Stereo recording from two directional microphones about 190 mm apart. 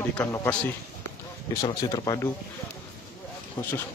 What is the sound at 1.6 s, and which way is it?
Speech, 20° left (ahead or behind).